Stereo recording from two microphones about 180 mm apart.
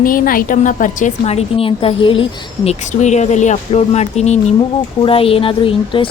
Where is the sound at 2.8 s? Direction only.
40° left (ahead or behind).